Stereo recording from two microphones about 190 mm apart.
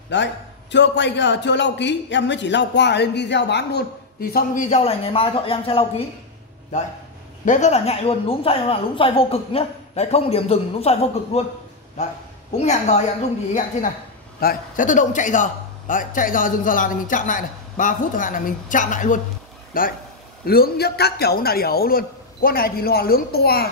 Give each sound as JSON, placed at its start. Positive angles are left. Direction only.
{"t": 0.1, "sound": "a man's voice", "side_deg": 70}
{"t": 4.6, "sound": "speech", "side_deg": 35}
{"t": 7.4, "sound": "a woman's voice", "side_deg": 40}
{"t": 12.5, "sound": "a woman's voice", "side_deg": 35}